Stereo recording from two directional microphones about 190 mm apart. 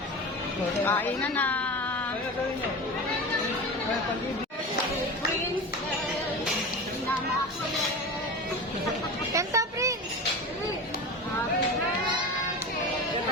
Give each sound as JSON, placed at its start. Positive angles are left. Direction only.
{"t": 0.9, "sound": "speech", "side_deg": 10}
{"t": 9.3, "sound": "speech", "side_deg": -15}